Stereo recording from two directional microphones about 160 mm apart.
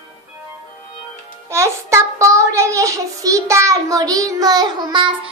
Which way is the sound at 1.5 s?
15° right (ahead or behind).